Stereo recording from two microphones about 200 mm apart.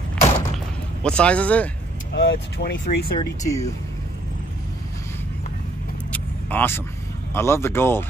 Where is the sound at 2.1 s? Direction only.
60° left (ahead or behind).